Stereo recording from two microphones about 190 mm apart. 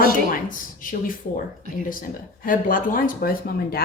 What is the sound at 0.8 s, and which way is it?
Speech, 45° left (ahead or behind).